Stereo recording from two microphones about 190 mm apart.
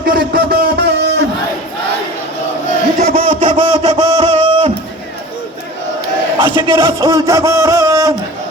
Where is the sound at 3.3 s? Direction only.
40° right (ahead or behind).